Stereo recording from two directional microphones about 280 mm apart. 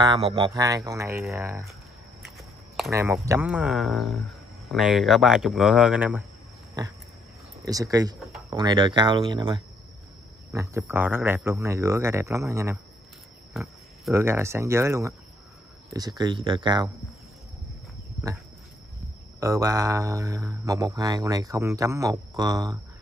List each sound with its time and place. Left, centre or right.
0.0 s speech: centre
6.8 s pig: centre
7.6 s speech: centre
8.2 s a sound: centre
8.5 s speech: centre
19.4 s speech: centre